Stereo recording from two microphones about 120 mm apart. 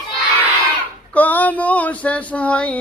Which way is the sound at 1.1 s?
15° left (ahead or behind).